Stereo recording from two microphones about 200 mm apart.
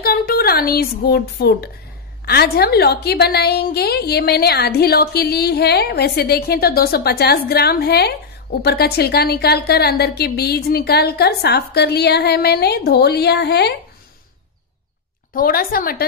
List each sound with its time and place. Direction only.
0.0 s a child's voice: 50° left (ahead or behind)
15.3 s a woman's voice: 45° left (ahead or behind)